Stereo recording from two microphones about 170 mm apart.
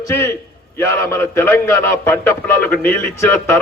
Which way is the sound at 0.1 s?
15° left (ahead or behind).